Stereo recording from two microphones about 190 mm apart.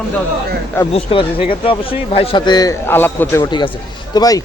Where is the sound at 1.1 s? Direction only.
30° left (ahead or behind).